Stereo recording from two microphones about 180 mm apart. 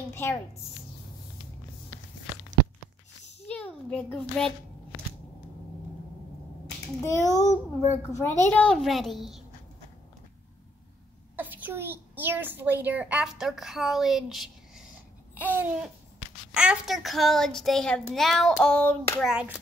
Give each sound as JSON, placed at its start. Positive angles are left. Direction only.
{"t": 0.1, "sound": "a woman's voice", "side_deg": 15}
{"t": 3.4, "sound": "a child's voice", "side_deg": 5}
{"t": 7.0, "sound": "a child's voice", "side_deg": 15}
{"t": 7.2, "sound": "a child's voice", "side_deg": 40}
{"t": 8.1, "sound": "a child's voice", "side_deg": 10}
{"t": 11.3, "sound": "a woman's voice", "side_deg": -10}
{"t": 15.3, "sound": "babbling", "side_deg": -10}
{"t": 16.5, "sound": "a child's voice", "side_deg": -5}
{"t": 19.2, "sound": "a child's voice", "side_deg": -5}